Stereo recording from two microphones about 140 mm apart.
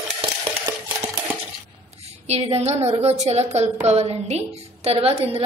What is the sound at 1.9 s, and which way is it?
A woman's voice, 50° right (ahead or behind).